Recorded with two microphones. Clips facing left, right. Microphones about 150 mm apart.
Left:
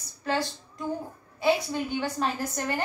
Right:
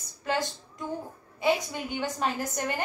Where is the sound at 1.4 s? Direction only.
15° right (ahead or behind).